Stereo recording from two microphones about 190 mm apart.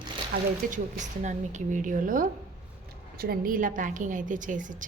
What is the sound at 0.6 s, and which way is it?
A woman's voice, 45° right (ahead or behind).